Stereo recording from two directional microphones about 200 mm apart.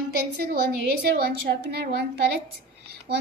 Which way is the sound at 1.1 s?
55° right (ahead or behind).